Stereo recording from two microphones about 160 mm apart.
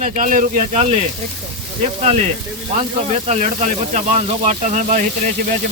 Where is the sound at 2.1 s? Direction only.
40° right (ahead or behind).